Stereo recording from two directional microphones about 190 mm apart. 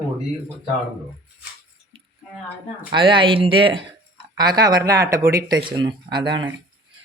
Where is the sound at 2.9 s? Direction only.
25° right (ahead or behind).